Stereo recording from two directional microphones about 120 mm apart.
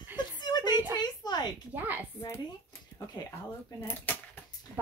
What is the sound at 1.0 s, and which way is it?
Speech, 35° left (ahead or behind).